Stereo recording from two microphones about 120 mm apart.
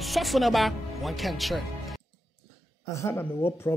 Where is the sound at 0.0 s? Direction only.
Centre (ahead or behind).